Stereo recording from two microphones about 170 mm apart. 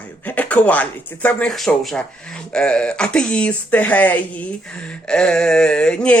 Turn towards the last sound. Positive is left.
turn(degrees=5)  # may be behind; listen again after turning